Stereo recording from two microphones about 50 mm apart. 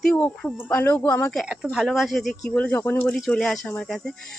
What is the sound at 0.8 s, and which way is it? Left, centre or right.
Speech, left.